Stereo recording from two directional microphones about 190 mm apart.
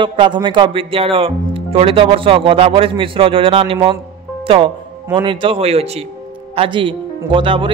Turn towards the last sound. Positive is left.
turn(degrees=-25)  # may be behind; listen again after turning